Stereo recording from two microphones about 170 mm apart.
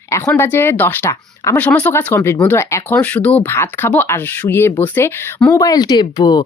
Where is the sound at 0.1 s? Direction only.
15° left (ahead or behind).